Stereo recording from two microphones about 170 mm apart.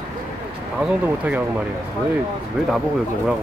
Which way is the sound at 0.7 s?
5° right (ahead or behind).